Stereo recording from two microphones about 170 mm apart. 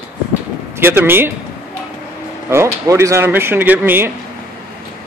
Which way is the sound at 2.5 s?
15° right (ahead or behind).